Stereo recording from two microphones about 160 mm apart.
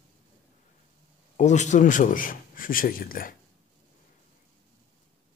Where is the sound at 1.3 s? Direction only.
45° left (ahead or behind); by 3.3 s 65° left (ahead or behind).